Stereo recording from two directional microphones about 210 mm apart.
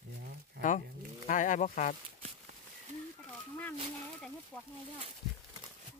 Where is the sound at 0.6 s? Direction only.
35° left (ahead or behind).